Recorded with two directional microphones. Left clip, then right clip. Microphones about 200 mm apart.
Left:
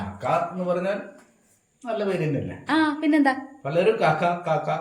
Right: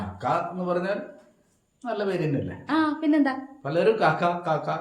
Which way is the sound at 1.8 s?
15° right (ahead or behind).